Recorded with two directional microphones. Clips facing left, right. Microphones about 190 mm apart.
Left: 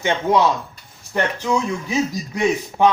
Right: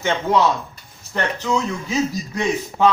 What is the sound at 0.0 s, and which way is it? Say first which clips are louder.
Speech: left 1 dB; 15° left (ahead or behind).